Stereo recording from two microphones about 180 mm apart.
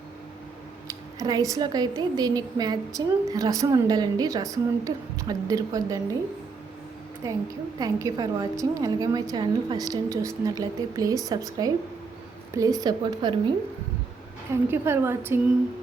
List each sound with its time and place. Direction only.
0.9 s speech: 20° right (ahead or behind)
7.2 s a woman's voice: 15° right (ahead or behind)
14.5 s a woman's voice: 15° right (ahead or behind)